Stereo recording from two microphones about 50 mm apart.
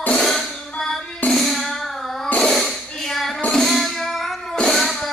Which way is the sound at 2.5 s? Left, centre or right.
Centre.